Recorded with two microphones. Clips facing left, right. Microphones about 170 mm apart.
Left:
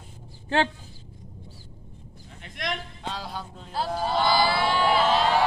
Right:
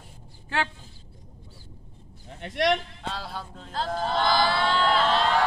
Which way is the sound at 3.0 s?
Centre (ahead or behind).